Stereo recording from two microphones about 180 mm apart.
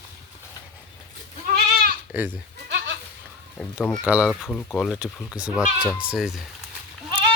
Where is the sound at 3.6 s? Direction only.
5° left (ahead or behind).